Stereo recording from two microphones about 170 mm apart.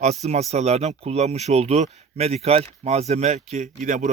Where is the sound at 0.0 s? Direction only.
40° right (ahead or behind).